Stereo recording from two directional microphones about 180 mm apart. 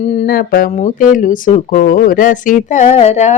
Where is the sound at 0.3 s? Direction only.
55° left (ahead or behind).